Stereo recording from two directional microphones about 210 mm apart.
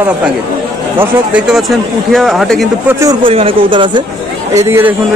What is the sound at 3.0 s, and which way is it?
Speech, 25° right (ahead or behind).